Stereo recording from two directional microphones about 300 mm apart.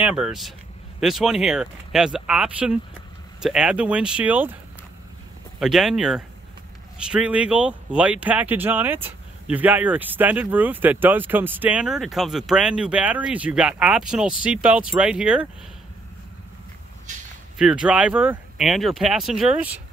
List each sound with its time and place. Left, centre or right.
0.0 s speech: centre
5.6 s speech: centre
17.6 s speech: centre